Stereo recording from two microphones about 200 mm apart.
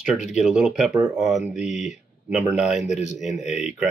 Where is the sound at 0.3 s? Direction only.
5° right (ahead or behind).